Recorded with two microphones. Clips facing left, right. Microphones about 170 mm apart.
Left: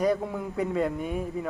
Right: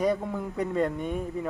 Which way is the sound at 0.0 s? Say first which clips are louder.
Left 1 dB; centre (ahead or behind).